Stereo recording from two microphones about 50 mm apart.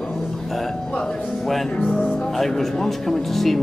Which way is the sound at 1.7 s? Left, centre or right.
Left.